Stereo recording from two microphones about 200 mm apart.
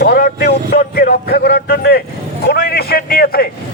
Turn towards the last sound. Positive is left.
turn(degrees=50)  # may be behind; listen again after turning